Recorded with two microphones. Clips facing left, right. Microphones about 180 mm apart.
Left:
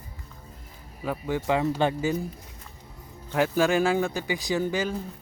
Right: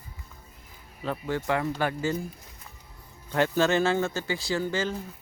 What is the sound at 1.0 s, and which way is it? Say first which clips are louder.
Speech: left 2 dB; 10° left (ahead or behind).